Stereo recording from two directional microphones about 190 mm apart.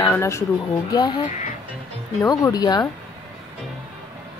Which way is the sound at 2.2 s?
20° left (ahead or behind).